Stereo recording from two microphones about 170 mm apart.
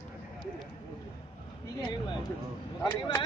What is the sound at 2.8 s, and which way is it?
Speech, 20° left (ahead or behind).